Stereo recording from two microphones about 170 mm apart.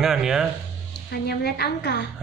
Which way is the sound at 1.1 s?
70° left (ahead or behind).